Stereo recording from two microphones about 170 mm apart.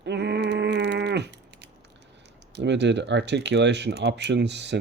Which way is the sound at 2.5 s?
90° right.